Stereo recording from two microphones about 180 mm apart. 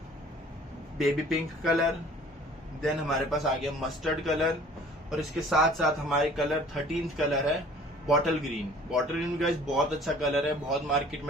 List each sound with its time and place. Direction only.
0.9 s speech: centre (ahead or behind)